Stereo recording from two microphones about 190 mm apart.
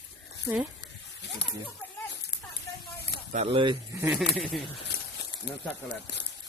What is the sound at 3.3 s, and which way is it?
Speech, 30° right (ahead or behind).